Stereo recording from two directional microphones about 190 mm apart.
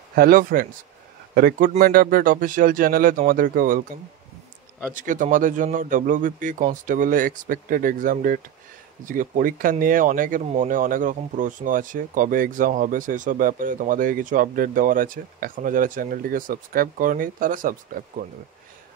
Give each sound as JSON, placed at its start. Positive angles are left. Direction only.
{"t": 0.1, "sound": "speech", "side_deg": -50}
{"t": 4.9, "sound": "speech", "side_deg": -45}